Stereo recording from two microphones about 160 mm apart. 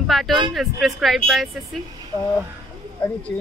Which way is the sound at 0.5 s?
Centre (ahead or behind).